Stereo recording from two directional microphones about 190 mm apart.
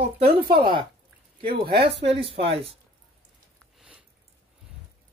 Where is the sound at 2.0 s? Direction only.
30° right (ahead or behind).